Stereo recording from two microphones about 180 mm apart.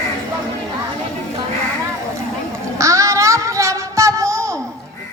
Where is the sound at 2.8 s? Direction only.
15° right (ahead or behind).